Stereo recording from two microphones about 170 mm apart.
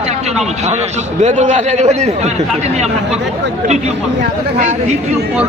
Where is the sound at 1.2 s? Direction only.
45° right (ahead or behind).